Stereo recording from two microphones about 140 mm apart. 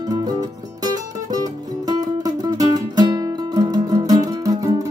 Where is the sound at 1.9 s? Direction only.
25° right (ahead or behind).